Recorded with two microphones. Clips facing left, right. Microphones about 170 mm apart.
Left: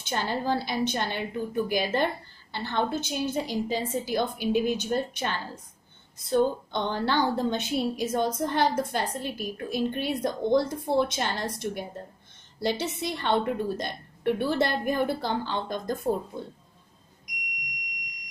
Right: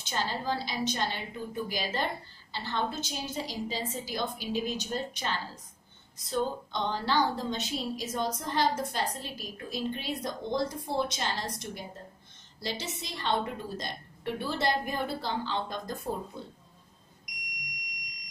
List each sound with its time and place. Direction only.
0.0 s a woman's voice: 55° left (ahead or behind)